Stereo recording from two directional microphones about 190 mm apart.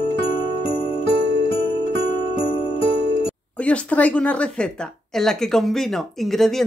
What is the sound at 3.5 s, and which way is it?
Speech, 5° left (ahead or behind).